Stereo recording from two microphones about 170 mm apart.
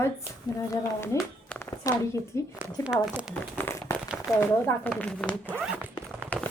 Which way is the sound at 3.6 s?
15° left (ahead or behind).